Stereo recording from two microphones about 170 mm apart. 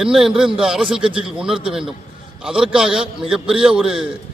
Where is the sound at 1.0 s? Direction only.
30° right (ahead or behind).